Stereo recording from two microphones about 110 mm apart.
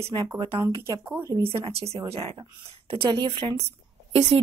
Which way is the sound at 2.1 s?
65° right (ahead or behind).